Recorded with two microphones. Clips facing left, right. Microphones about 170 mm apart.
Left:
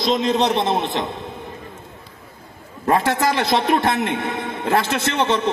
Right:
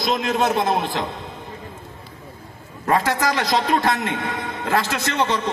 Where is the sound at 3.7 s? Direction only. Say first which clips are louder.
Left 2 dB; 20° left (ahead or behind).